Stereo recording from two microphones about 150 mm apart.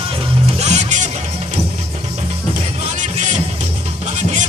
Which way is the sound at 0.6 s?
55° right (ahead or behind).